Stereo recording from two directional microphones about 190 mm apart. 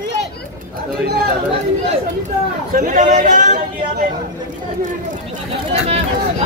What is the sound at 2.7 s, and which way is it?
Speech, 45° right (ahead or behind).